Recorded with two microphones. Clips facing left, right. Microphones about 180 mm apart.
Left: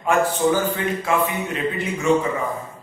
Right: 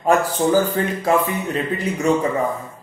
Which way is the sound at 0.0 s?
40° right (ahead or behind).